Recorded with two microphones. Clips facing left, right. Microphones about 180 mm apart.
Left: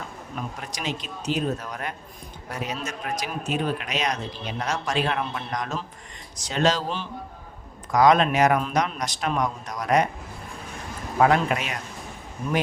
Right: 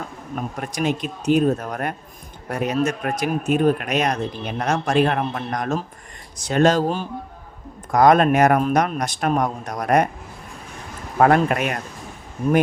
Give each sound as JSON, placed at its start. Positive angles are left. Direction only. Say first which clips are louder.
{"t": 0.3, "sound": "a man's voice", "louder": "right 8 dB", "side_deg": -50}
{"t": 11.2, "sound": "a man's voice", "louder": "right 4 dB", "side_deg": -50}